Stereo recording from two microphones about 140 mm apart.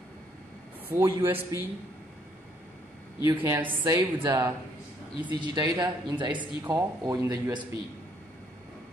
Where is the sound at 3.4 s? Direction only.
20° right (ahead or behind).